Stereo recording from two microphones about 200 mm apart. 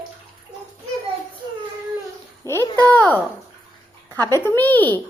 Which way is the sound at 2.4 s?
15° left (ahead or behind).